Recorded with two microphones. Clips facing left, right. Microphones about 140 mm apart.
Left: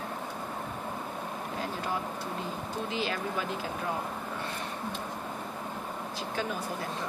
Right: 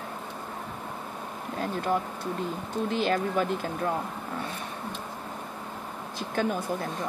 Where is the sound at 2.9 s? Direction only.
50° right (ahead or behind).